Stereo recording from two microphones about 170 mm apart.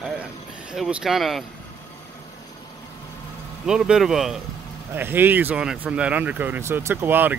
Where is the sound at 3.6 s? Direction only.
5° right (ahead or behind).